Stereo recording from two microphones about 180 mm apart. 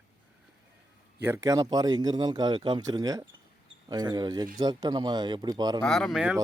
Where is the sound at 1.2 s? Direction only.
15° right (ahead or behind).